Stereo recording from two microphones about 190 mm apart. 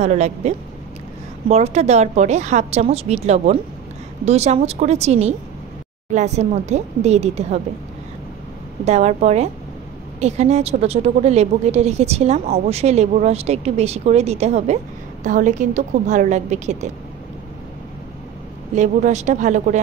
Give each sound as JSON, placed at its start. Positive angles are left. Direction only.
{"t": 0.0, "sound": "a woman's voice", "side_deg": -35}
{"t": 8.8, "sound": "a woman's voice", "side_deg": -35}
{"t": 18.8, "sound": "a woman's voice", "side_deg": -40}